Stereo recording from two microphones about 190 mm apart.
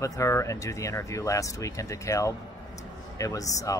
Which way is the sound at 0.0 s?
15° left (ahead or behind).